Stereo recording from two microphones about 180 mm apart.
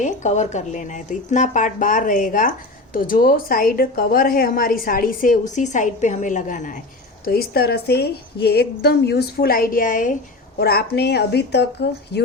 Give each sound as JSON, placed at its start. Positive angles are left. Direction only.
{"t": 0.0, "sound": "speech", "side_deg": 40}
{"t": 7.3, "sound": "a woman's voice", "side_deg": 60}
{"t": 10.6, "sound": "speech", "side_deg": 60}